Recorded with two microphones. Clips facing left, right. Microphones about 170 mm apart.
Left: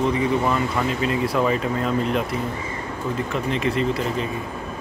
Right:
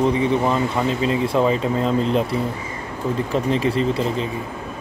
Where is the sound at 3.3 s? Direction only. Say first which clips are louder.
Right 4 dB; 35° right (ahead or behind).